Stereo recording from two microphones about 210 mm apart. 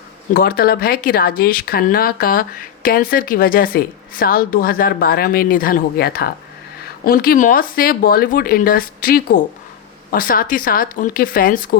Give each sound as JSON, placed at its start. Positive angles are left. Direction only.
{"t": 0.3, "sound": "speech", "side_deg": 45}